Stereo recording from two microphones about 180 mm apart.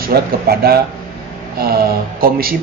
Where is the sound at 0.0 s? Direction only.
60° right (ahead or behind).